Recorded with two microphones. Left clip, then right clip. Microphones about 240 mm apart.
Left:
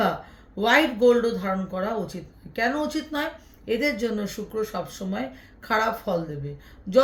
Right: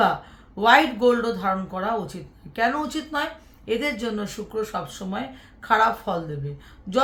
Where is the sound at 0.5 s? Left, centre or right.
Centre.